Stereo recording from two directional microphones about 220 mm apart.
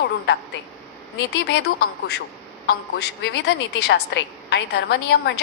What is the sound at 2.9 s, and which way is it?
A woman's voice, 50° left (ahead or behind).